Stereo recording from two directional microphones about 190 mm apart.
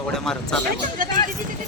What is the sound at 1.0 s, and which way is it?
Speech, 45° right (ahead or behind).